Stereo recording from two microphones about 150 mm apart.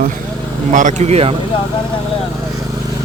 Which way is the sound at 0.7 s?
55° right (ahead or behind).